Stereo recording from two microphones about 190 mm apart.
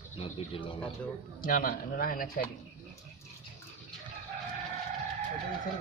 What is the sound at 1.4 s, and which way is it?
Speech, 50° left (ahead or behind).